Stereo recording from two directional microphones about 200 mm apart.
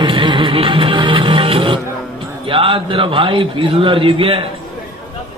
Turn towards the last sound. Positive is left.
turn(degrees=-25)  # may be behind; listen again after turning